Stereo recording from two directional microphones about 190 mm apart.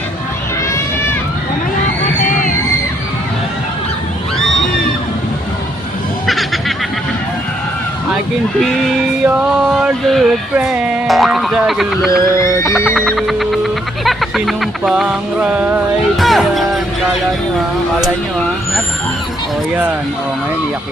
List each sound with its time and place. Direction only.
2.2 s crowd: 45° left (ahead or behind)
6.2 s music: centre (ahead or behind)
8.6 s a sound: 5° right (ahead or behind)
12.6 s music: centre (ahead or behind)